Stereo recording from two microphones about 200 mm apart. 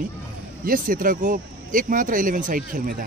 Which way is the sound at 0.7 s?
45° right (ahead or behind).